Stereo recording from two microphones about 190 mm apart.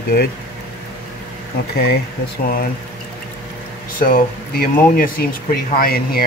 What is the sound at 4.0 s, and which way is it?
Speech, 50° left (ahead or behind).